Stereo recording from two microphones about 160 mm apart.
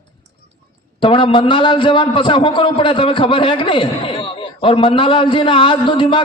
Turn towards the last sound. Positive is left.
turn(degrees=30)  # may be behind; listen again after turning